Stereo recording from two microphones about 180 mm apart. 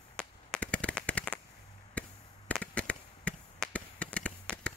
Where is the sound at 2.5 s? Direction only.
5° left (ahead or behind).